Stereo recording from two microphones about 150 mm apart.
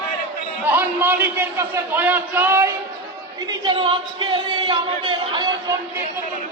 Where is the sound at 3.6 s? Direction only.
35° right (ahead or behind).